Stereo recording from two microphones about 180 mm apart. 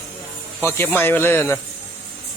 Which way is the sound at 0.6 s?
10° left (ahead or behind).